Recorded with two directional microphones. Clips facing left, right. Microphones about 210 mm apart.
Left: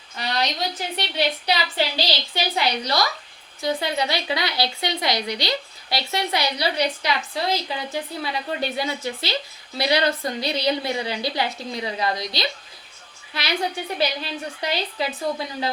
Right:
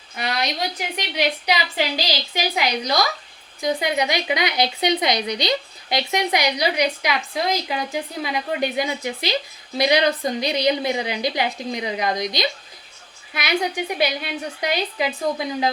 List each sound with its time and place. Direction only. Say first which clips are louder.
0.4 s a woman's voice: right 1 dB; 15° right (ahead or behind)